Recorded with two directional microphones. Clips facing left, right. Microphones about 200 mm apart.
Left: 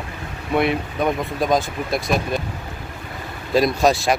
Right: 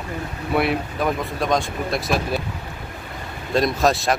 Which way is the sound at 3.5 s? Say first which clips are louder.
Left 2 dB; centre (ahead or behind).